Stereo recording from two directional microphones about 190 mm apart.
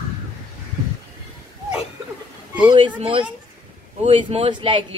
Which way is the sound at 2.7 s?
30° right (ahead or behind).